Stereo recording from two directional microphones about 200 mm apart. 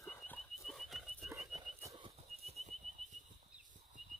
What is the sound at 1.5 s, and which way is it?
Whistling, 15° right (ahead or behind).